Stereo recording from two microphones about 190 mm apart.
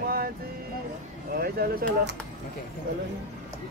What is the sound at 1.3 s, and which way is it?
Speech, 55° right (ahead or behind).